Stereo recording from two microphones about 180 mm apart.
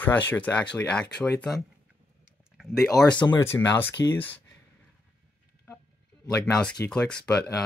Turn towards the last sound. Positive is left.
turn(degrees=5)  # may be behind; listen again after turning